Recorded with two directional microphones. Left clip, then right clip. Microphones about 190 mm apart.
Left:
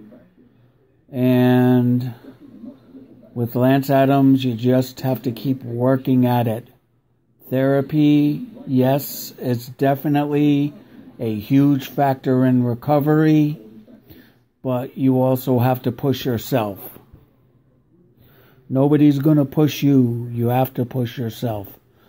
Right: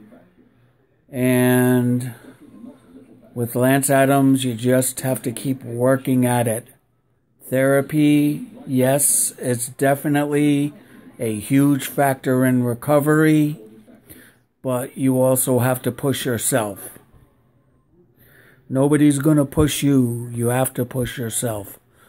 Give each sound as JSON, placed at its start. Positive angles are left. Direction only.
{"t": 1.1, "sound": "speech", "side_deg": -15}
{"t": 3.3, "sound": "speech", "side_deg": -15}
{"t": 18.7, "sound": "speech", "side_deg": -15}